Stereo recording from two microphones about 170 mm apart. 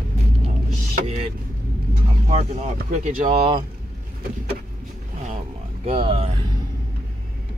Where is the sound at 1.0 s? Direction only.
40° right (ahead or behind).